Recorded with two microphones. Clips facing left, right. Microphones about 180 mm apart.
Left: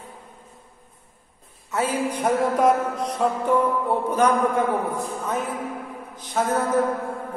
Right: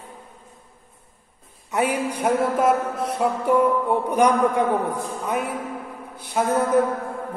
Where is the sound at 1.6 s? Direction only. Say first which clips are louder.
Right 1 dB; 15° right (ahead or behind).